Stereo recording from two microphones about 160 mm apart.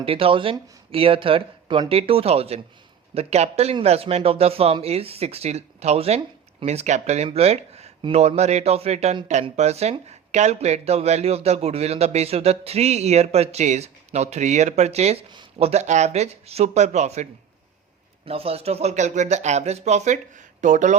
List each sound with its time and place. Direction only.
0.0 s speech: 35° right (ahead or behind)
18.3 s speech: 40° right (ahead or behind)